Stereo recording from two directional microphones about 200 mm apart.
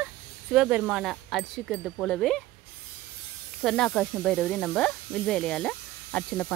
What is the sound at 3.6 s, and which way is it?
Speech, 5° left (ahead or behind).